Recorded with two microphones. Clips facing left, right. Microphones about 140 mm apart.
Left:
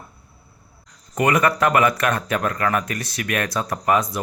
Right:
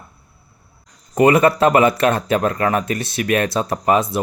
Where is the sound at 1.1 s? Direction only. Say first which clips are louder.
Right 6 dB; 25° right (ahead or behind).